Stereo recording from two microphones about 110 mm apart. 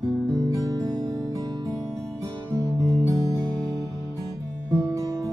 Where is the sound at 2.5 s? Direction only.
30° right (ahead or behind).